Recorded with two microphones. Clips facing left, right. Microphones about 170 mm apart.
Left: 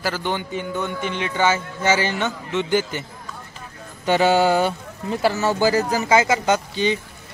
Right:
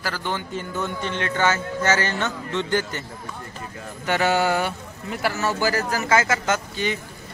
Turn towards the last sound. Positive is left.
turn(degrees=20)  # may be behind; listen again after turning